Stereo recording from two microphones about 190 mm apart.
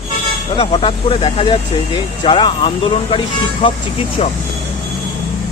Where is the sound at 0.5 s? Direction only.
30° left (ahead or behind).